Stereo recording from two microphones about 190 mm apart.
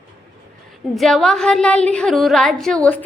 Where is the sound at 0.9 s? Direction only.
Centre (ahead or behind).